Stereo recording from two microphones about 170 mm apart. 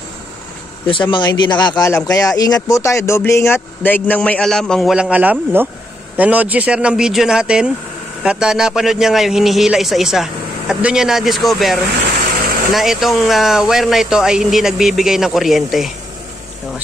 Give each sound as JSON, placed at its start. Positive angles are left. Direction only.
{"t": 0.8, "sound": "a man's voice", "side_deg": 30}